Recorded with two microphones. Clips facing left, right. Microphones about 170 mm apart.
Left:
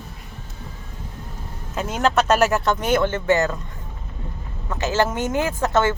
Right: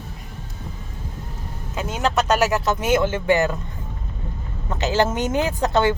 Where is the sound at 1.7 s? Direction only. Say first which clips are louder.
Left 2 dB; centre (ahead or behind); by 3.6 s 15° right (ahead or behind).